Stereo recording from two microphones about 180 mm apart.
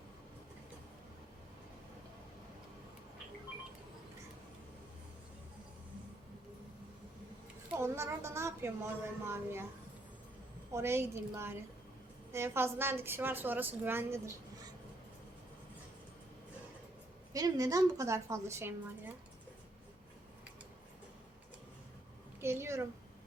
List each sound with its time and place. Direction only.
7.7 s a woman's voice: 15° right (ahead or behind)
10.7 s a woman's voice: 15° right (ahead or behind)
17.3 s a woman's voice: 20° right (ahead or behind)
22.4 s a woman's voice: 15° right (ahead or behind)